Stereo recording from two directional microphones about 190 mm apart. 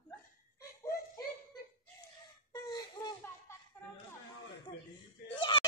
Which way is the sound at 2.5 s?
20° left (ahead or behind).